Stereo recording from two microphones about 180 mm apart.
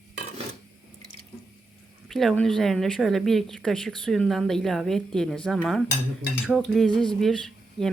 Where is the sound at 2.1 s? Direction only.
Centre (ahead or behind).